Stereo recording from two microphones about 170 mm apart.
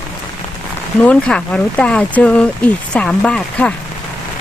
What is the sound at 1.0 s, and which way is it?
Speech, 5° left (ahead or behind).